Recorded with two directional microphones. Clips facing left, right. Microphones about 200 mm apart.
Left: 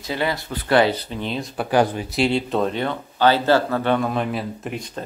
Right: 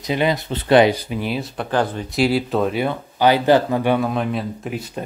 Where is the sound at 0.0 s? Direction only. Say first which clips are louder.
Right 4 dB; 20° right (ahead or behind).